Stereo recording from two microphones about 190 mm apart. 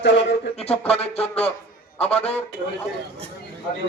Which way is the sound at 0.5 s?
35° left (ahead or behind).